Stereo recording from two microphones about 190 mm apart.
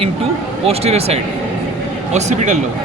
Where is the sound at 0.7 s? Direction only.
35° right (ahead or behind).